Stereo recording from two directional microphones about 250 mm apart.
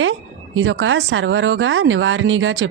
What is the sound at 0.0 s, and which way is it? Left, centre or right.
Speech, right.